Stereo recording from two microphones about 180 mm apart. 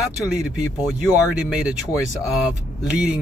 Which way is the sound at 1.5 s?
5° right (ahead or behind).